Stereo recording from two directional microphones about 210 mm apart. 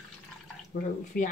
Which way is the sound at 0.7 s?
40° left (ahead or behind).